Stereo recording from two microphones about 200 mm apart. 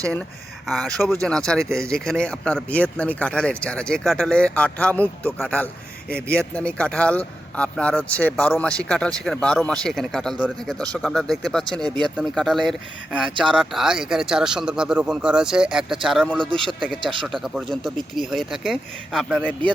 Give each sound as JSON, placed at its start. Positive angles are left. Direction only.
{"t": 1.2, "sound": "speech", "side_deg": 5}
{"t": 16.5, "sound": "speech", "side_deg": -25}
{"t": 17.2, "sound": "speech", "side_deg": 0}